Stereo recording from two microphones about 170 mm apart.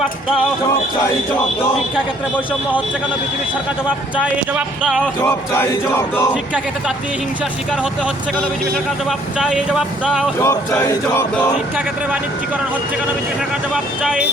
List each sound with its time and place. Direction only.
3.8 s speech: 5° right (ahead or behind)
5.2 s music: 15° left (ahead or behind)
6.3 s speech: 5° right (ahead or behind)
9.0 s speech: 5° right (ahead or behind)
10.4 s music: 15° left (ahead or behind)
14.0 s speech: 5° right (ahead or behind)